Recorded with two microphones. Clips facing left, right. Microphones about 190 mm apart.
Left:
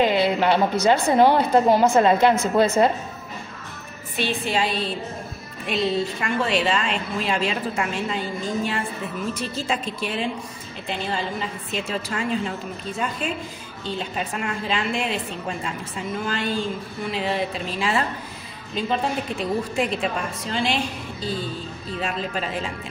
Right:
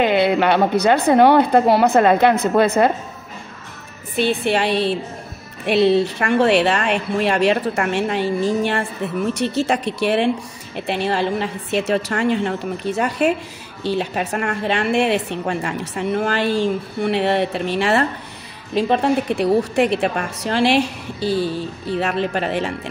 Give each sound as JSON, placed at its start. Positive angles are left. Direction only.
{"t": 0.0, "sound": "a woman's voice", "side_deg": -60}
{"t": 4.2, "sound": "speech", "side_deg": -65}